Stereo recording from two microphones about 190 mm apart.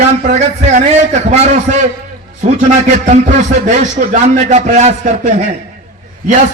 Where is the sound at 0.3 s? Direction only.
40° right (ahead or behind).